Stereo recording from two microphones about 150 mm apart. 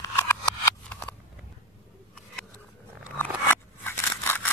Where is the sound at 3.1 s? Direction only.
15° left (ahead or behind).